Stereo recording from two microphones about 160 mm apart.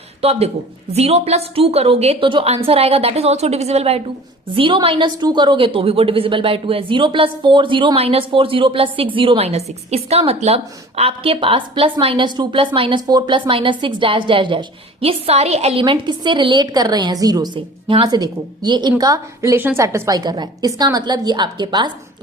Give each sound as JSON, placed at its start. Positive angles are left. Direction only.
{"t": 0.2, "sound": "a woman's voice", "side_deg": -40}
{"t": 15.8, "sound": "a woman's voice", "side_deg": -30}